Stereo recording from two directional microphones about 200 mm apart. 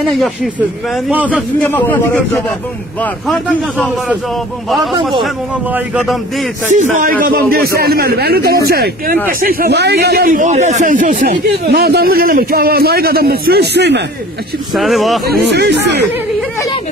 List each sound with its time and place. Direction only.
0.1 s a man's voice: centre (ahead or behind)
5.2 s speech: 5° right (ahead or behind)
6.7 s speech: 40° right (ahead or behind); by 14.0 s 60° right (ahead or behind)
14.7 s speech: centre (ahead or behind)